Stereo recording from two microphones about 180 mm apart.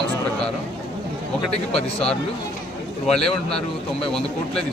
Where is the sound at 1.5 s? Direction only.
35° left (ahead or behind).